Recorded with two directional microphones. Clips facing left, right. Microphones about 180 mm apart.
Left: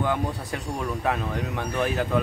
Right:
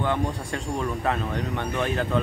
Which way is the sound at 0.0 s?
5° left (ahead or behind).